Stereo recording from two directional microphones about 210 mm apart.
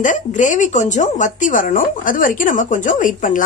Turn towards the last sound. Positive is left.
turn(degrees=40)  # may be behind; listen again after turning